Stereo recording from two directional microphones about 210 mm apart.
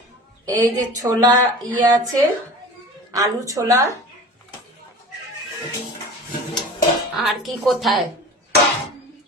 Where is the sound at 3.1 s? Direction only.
15° right (ahead or behind).